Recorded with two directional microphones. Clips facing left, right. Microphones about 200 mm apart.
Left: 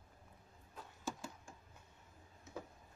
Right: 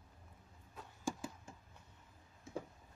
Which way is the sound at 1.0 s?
15° right (ahead or behind).